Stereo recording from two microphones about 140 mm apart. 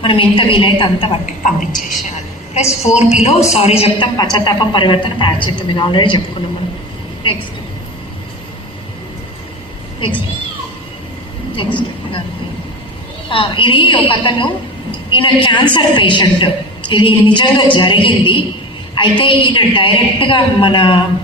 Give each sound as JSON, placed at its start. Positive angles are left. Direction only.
{"t": 0.0, "sound": "a woman's voice", "side_deg": 35}
{"t": 1.5, "sound": "a woman's voice", "side_deg": 70}
{"t": 2.8, "sound": "a woman's voice", "side_deg": 50}
{"t": 4.2, "sound": "a woman's voice", "side_deg": 30}
{"t": 11.5, "sound": "a woman's voice", "side_deg": 35}
{"t": 13.3, "sound": "a woman's voice", "side_deg": 40}